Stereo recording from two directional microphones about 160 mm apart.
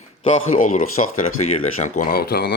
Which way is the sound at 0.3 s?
40° left (ahead or behind).